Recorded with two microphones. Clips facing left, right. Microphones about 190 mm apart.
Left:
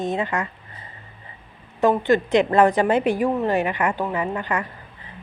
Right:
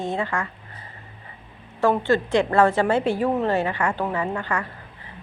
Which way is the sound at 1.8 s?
15° left (ahead or behind).